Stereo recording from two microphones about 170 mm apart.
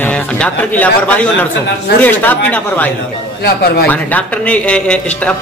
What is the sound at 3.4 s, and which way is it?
Speech, 70° left (ahead or behind).